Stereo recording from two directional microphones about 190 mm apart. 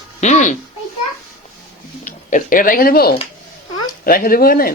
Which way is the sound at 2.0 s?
45° left (ahead or behind).